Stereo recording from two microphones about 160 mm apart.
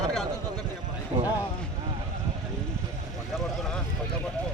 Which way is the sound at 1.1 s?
25° right (ahead or behind).